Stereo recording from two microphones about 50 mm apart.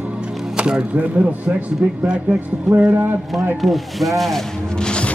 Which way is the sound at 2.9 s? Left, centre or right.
Right.